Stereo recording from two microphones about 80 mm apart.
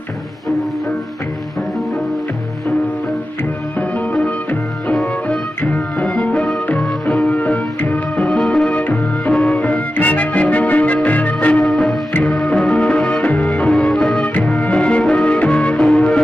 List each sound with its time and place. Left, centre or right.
4.1 s music: centre
11.7 s music: centre